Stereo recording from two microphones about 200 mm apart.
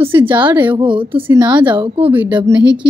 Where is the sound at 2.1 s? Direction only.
10° right (ahead or behind).